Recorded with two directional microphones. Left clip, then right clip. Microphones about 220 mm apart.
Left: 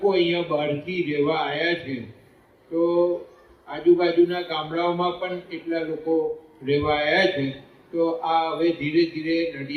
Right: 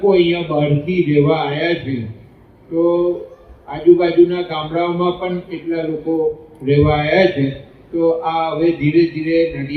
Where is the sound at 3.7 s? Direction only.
50° left (ahead or behind).